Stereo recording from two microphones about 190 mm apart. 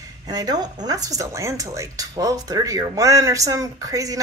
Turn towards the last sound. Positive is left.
turn(degrees=-20)  # may be behind; listen again after turning